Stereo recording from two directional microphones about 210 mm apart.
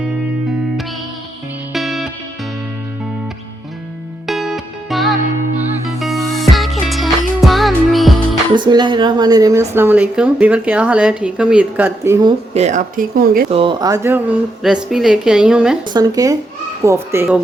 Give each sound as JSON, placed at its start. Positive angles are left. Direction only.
{"t": 1.7, "sound": "music", "side_deg": 0}
{"t": 4.3, "sound": "music", "side_deg": 0}
{"t": 8.5, "sound": "a woman's voice", "side_deg": -20}
{"t": 12.5, "sound": "speech", "side_deg": -35}
{"t": 13.5, "sound": "speech", "side_deg": -25}
{"t": 15.9, "sound": "a woman's voice", "side_deg": -20}